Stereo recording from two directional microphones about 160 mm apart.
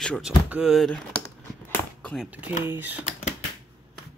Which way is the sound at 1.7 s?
10° left (ahead or behind).